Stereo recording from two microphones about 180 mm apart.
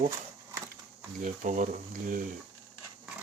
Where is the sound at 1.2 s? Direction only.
45° right (ahead or behind).